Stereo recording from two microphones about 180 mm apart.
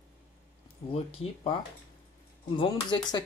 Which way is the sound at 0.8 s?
30° left (ahead or behind).